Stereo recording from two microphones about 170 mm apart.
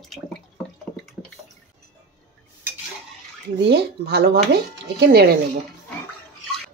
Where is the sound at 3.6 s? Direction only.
75° right (ahead or behind).